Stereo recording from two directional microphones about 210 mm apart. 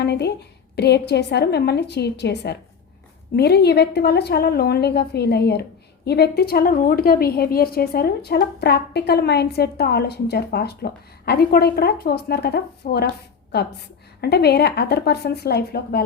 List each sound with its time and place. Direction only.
0.0 s a woman's voice: 50° left (ahead or behind)
14.2 s a woman's voice: 50° left (ahead or behind)